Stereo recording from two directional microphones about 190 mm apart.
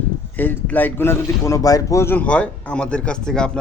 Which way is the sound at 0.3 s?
10° left (ahead or behind).